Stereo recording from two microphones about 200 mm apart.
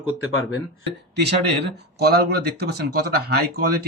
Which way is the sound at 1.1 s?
55° right (ahead or behind).